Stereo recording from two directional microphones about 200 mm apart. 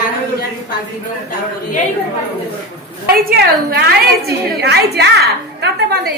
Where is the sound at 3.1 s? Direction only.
50° right (ahead or behind).